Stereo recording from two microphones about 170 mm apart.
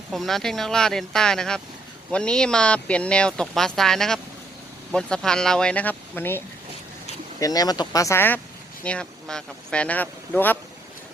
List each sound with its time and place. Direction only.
0.1 s speech: centre (ahead or behind)